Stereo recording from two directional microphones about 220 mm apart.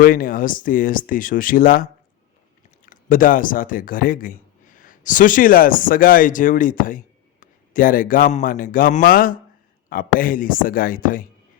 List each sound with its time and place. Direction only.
0.0 s speech: 40° left (ahead or behind)